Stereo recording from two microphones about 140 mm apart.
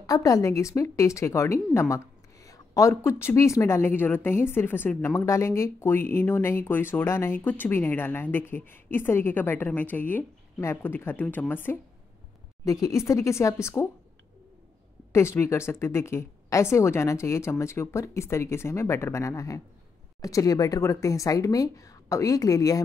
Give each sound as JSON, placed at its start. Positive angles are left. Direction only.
{"t": 0.0, "sound": "a woman's voice", "side_deg": 25}
{"t": 12.8, "sound": "speech", "side_deg": 20}
{"t": 15.1, "sound": "speech", "side_deg": 20}